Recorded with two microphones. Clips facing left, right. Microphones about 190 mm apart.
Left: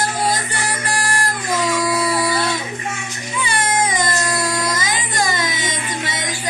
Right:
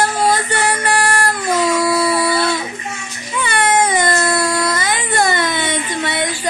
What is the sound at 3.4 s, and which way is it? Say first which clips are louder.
Baby cry: right 5 dB; 60° right (ahead or behind).